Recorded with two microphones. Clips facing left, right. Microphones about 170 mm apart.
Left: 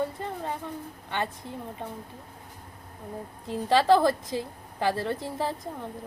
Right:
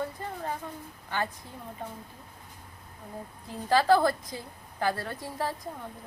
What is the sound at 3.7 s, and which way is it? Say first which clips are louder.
A woman's voice: left 2 dB; 25° left (ahead or behind).